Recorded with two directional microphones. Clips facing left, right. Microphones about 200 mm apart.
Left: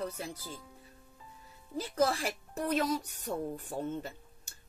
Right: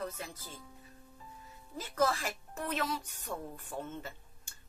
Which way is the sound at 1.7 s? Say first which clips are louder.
Left 2 dB; 35° left (ahead or behind).